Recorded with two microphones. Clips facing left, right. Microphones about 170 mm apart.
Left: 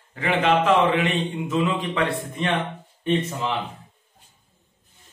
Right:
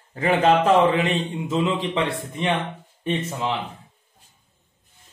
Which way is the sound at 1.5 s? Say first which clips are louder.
Right 2 dB; 25° right (ahead or behind).